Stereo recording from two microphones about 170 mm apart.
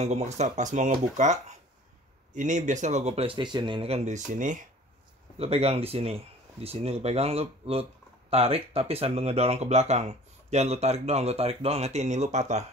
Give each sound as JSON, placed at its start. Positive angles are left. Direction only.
{"t": 0.0, "sound": "speech", "side_deg": -40}
{"t": 5.4, "sound": "speech", "side_deg": -35}